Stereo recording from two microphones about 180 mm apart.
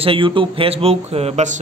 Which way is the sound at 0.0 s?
30° right (ahead or behind).